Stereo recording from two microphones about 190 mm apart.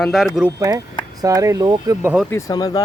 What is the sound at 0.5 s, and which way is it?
Speech, 15° right (ahead or behind).